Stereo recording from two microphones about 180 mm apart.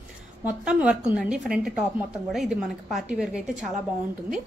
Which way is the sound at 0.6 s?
5° right (ahead or behind).